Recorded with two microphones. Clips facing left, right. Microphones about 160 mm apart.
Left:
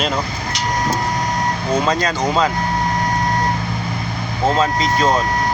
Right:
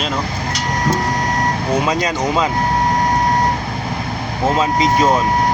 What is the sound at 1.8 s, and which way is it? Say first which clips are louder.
Speech: even; 15° right (ahead or behind).